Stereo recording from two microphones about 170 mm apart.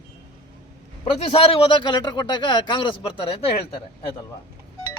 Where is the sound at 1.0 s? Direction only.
35° left (ahead or behind).